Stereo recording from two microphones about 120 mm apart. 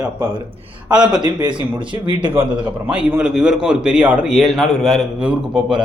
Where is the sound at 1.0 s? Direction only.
35° right (ahead or behind).